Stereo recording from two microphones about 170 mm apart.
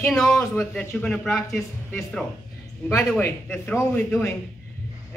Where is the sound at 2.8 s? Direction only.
15° left (ahead or behind).